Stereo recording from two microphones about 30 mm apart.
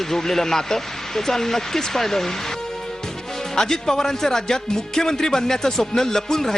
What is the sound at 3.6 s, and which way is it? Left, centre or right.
Speech, centre.